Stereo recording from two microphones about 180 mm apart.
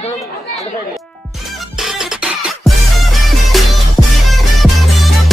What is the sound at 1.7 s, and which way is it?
Music, centre (ahead or behind).